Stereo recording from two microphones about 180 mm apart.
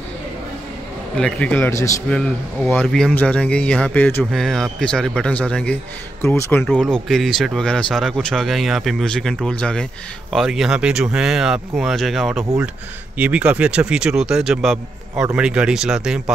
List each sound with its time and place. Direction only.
1.1 s a man's voice: 5° left (ahead or behind)
6.6 s speech: 5° left (ahead or behind)